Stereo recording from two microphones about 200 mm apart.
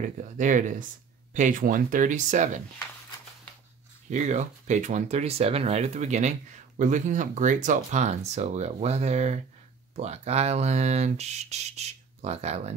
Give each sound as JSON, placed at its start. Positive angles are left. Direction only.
{"t": 0.0, "sound": "speech", "side_deg": -40}
{"t": 4.1, "sound": "speech", "side_deg": -35}